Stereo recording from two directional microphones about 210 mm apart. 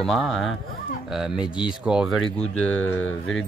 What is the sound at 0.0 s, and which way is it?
Speech, centre (ahead or behind).